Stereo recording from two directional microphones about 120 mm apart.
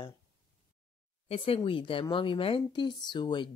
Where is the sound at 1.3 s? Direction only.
50° left (ahead or behind).